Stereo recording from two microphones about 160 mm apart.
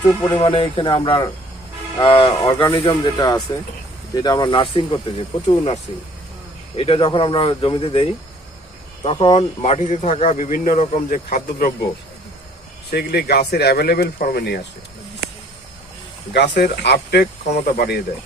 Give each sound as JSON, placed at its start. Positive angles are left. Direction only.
{"t": 0.3, "sound": "speech", "side_deg": 30}
{"t": 2.4, "sound": "speech", "side_deg": 25}
{"t": 9.0, "sound": "speech", "side_deg": 35}
{"t": 9.6, "sound": "a man's voice", "side_deg": 45}
{"t": 12.9, "sound": "speech", "side_deg": 75}
{"t": 16.3, "sound": "speech", "side_deg": 90}
{"t": 17.7, "sound": "speech", "side_deg": 80}